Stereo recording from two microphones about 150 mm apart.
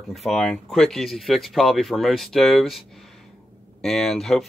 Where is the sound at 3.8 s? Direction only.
Centre (ahead or behind).